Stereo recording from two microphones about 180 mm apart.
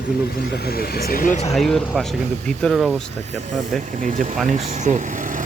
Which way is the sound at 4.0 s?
45° right (ahead or behind).